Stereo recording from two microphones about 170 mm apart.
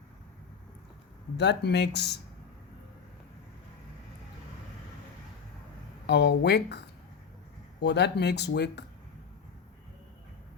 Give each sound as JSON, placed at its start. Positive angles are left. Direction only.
{"t": 1.4, "sound": "speech", "side_deg": 80}
{"t": 6.1, "sound": "speech", "side_deg": 90}